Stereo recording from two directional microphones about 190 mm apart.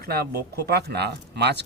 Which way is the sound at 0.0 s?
55° right (ahead or behind).